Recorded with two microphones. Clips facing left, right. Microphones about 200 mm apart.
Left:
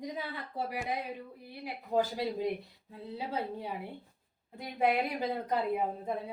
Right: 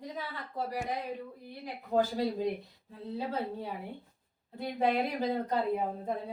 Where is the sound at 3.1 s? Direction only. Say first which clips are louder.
Right 2 dB; 15° left (ahead or behind).